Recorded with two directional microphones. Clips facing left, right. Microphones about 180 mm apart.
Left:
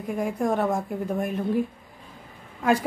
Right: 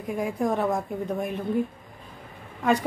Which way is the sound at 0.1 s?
Centre (ahead or behind).